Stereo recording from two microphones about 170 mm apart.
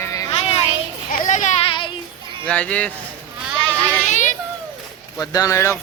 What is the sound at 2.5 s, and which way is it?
Speech, 5° left (ahead or behind).